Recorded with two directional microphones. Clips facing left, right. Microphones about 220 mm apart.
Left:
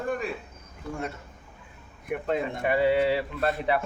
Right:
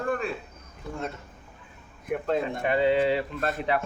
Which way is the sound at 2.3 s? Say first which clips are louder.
Even; 10° left (ahead or behind).